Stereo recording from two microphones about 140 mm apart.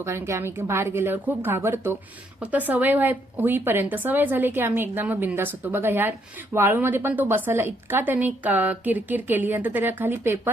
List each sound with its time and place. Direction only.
0.0 s a woman's voice: 20° right (ahead or behind)